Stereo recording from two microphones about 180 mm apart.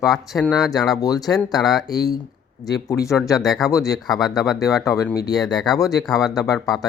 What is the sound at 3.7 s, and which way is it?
Speech, 20° left (ahead or behind).